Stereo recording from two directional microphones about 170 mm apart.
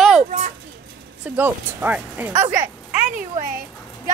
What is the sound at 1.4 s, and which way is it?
Speech, 10° right (ahead or behind).